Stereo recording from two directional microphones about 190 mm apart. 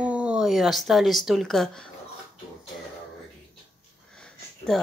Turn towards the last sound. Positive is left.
turn(degrees=5)  # may be behind; listen again after turning